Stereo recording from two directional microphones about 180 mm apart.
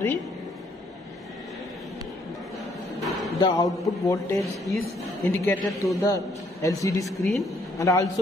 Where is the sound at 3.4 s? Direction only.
20° left (ahead or behind).